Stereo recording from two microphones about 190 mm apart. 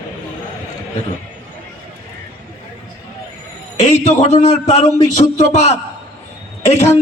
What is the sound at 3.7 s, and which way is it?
A man's voice, 35° left (ahead or behind).